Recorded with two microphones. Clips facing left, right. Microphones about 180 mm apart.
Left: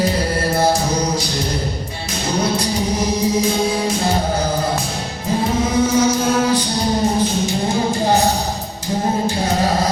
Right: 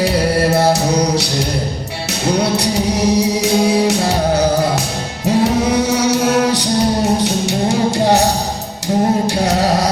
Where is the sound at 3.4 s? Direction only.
75° right (ahead or behind).